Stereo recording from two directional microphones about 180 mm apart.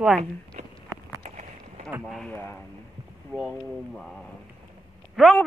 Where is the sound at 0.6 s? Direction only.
40° right (ahead or behind).